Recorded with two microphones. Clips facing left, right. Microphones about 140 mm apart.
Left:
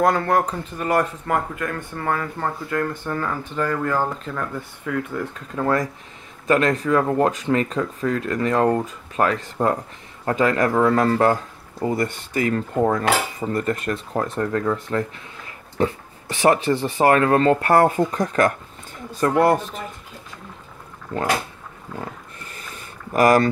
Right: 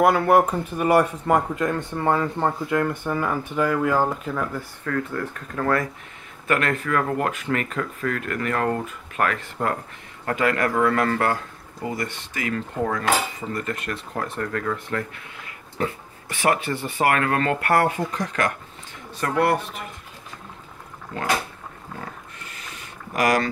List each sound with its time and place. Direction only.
0.0 s speech: 10° right (ahead or behind)
1.5 s speech: 25° right (ahead or behind); by 4.6 s 5° right (ahead or behind)
4.8 s speech: 10° left (ahead or behind)
6.4 s a man's voice: 30° left (ahead or behind)
14.4 s speech: 25° left (ahead or behind); by 18.5 s 40° left (ahead or behind)
21.1 s speech: 40° left (ahead or behind)
23.1 s speech: 40° left (ahead or behind)